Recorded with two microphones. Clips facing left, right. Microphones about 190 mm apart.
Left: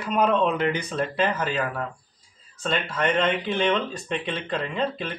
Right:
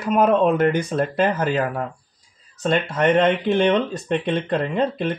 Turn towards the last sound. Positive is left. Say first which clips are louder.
# right 6 dB
turn(degrees=-55)  # may be behind; listen again after turning